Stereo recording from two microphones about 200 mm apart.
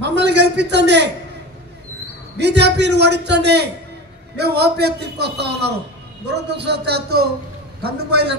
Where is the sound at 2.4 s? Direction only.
60° right (ahead or behind).